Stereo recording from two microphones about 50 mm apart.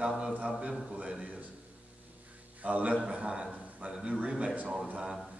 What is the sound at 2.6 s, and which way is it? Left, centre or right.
A man's voice, right.